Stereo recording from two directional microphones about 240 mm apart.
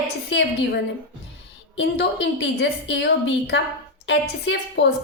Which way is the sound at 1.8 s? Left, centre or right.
Left.